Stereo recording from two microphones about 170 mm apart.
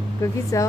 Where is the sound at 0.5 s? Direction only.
20° left (ahead or behind).